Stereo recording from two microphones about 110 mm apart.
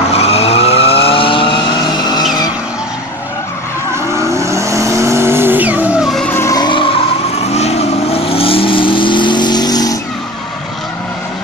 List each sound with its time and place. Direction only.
0.1 s vehicle: 65° left (ahead or behind)
3.9 s vehicle: 25° right (ahead or behind)
5.9 s vehicle: centre (ahead or behind)
6.4 s vehicle: 35° left (ahead or behind)
6.7 s vehicle: 55° left (ahead or behind); by 9.9 s 35° left (ahead or behind)